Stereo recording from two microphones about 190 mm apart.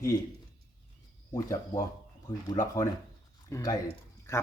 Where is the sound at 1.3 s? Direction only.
20° left (ahead or behind).